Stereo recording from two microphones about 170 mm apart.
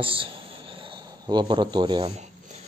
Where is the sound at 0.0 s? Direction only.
30° right (ahead or behind).